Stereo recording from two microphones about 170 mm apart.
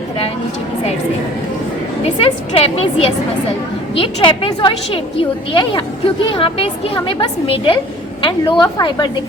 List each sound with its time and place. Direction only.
2.1 s a woman's voice: 35° left (ahead or behind)